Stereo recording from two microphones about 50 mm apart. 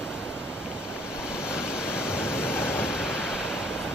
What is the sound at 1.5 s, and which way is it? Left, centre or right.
Waves, centre.